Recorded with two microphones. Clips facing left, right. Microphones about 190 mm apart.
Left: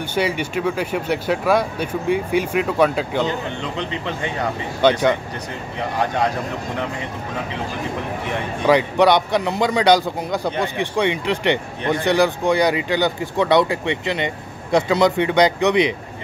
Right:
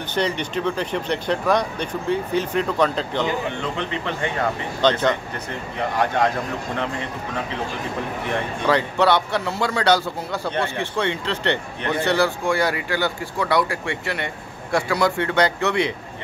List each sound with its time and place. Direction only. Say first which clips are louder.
0.1 s a man's voice: left 1 dB; 10° left (ahead or behind)
4.8 s a man's voice: left 3 dB; 10° left (ahead or behind)
8.6 s a man's voice: left 4 dB; 15° left (ahead or behind)